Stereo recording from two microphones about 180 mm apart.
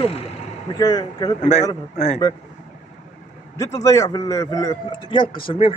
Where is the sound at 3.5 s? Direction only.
20° left (ahead or behind).